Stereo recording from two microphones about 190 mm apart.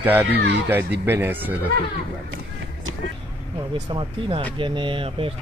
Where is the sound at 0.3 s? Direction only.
60° right (ahead or behind).